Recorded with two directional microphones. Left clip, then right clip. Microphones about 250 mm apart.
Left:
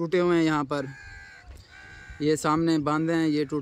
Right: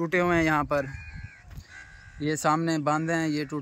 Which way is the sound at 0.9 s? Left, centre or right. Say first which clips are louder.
Left 1 dB; left.